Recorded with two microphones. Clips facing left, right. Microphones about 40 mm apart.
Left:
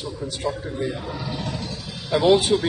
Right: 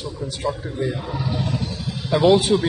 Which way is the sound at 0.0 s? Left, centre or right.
Centre.